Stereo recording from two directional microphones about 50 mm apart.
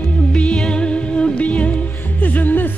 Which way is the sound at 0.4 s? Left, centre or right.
Centre.